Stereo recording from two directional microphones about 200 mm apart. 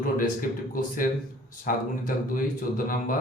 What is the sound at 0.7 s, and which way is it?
Speech, 45° left (ahead or behind).